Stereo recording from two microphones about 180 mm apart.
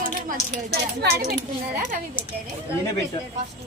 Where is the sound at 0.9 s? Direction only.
65° right (ahead or behind).